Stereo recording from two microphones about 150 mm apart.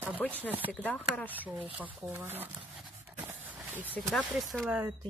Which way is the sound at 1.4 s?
10° right (ahead or behind).